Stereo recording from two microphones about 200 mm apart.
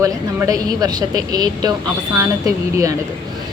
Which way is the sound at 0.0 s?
15° right (ahead or behind).